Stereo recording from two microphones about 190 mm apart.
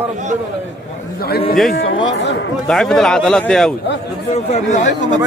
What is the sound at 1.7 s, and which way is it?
Speech, 75° left (ahead or behind).